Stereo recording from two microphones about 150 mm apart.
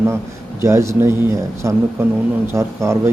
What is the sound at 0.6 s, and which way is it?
Speech, 20° right (ahead or behind).